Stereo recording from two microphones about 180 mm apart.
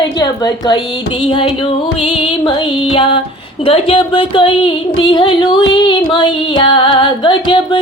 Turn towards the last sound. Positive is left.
turn(degrees=25)  # may be behind; listen again after turning